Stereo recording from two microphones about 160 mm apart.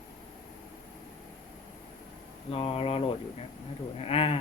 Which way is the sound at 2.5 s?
35° left (ahead or behind).